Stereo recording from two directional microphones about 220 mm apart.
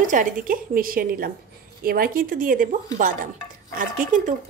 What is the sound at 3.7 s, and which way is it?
Speech, 35° right (ahead or behind).